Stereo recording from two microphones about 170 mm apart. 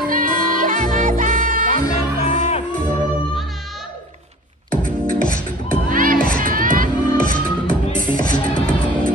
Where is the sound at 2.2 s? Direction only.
45° left (ahead or behind).